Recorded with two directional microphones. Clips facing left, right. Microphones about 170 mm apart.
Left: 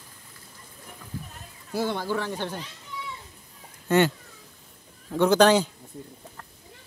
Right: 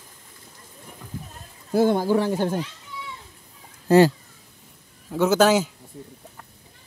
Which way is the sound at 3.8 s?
35° right (ahead or behind).